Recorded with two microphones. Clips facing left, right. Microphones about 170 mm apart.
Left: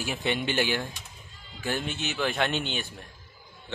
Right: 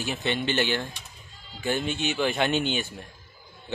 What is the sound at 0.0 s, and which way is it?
A man's voice, 10° left (ahead or behind).